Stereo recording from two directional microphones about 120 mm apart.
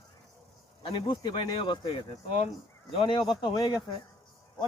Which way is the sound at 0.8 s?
45° left (ahead or behind).